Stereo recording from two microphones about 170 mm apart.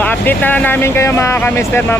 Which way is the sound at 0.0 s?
10° left (ahead or behind).